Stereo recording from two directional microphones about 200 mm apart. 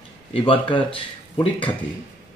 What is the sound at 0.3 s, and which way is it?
Speech, 25° left (ahead or behind).